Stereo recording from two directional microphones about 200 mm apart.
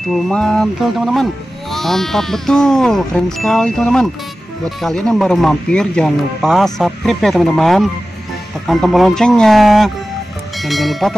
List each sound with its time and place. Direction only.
0.1 s speech: 5° left (ahead or behind)